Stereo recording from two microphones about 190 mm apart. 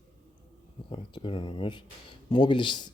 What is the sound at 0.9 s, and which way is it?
Speech, 25° left (ahead or behind).